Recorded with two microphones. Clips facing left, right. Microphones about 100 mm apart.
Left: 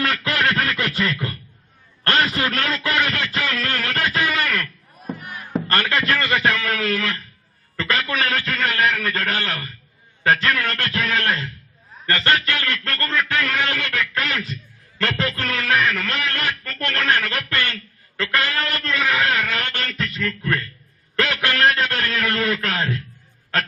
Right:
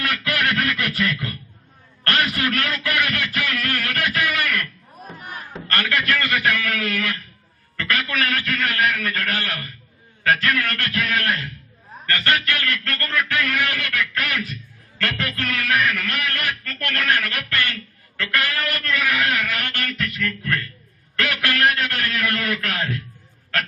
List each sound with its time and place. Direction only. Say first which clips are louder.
0.0 s music: left 2 dB; 25° left (ahead or behind)
2.0 s speech: left 2 dB; 25° left (ahead or behind)
3.3 s music: left 1 dB; 25° left (ahead or behind)
5.6 s speech: left 1 dB; 25° left (ahead or behind)